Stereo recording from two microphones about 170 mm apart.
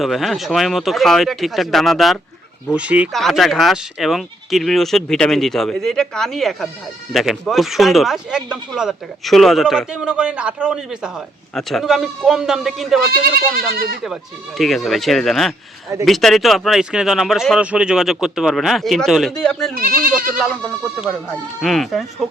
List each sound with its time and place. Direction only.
0.0 s speech: centre (ahead or behind)
13.7 s speech: 65° right (ahead or behind)
14.6 s speech: centre (ahead or behind)
19.7 s speech: 60° right (ahead or behind)
21.0 s speech: centre (ahead or behind)